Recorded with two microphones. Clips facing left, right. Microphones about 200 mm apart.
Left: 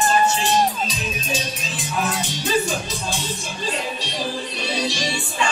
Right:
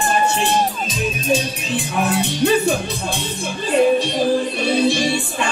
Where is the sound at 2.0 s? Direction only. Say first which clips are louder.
Right 8 dB; 60° right (ahead or behind).